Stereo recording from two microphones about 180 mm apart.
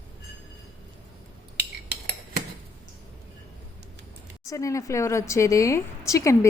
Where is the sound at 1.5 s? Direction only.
65° right (ahead or behind).